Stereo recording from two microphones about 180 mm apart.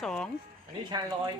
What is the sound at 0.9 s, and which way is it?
Speech, 20° right (ahead or behind).